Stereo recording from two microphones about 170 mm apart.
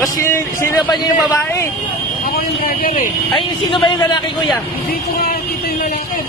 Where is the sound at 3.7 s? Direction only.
30° left (ahead or behind).